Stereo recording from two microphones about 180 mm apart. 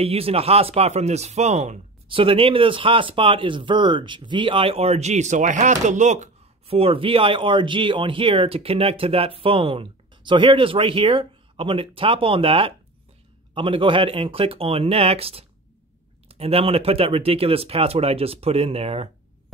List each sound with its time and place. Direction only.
0.0 s speech: 35° right (ahead or behind)